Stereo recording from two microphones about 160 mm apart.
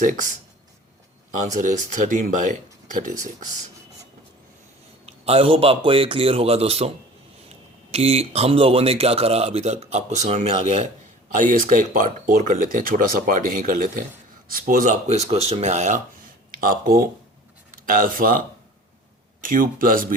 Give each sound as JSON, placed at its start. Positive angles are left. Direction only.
{"t": 0.0, "sound": "speech", "side_deg": -55}
{"t": 1.3, "sound": "speech", "side_deg": -50}
{"t": 5.0, "sound": "speech", "side_deg": -40}
{"t": 11.3, "sound": "speech", "side_deg": -55}
{"t": 15.0, "sound": "speech", "side_deg": -40}
{"t": 16.5, "sound": "speech", "side_deg": -60}